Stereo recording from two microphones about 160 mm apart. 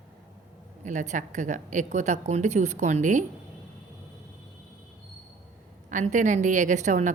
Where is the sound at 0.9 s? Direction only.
50° right (ahead or behind).